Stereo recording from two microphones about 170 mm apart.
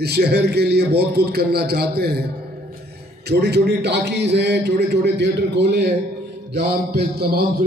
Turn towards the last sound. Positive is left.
turn(degrees=-65)  # may be behind; listen again after turning